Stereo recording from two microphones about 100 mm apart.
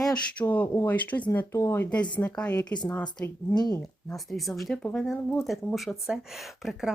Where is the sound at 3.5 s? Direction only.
45° left (ahead or behind).